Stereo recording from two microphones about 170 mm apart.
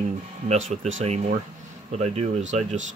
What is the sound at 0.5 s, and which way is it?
Speech, 45° right (ahead or behind).